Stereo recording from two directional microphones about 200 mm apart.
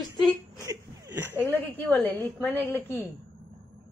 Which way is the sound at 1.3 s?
10° left (ahead or behind).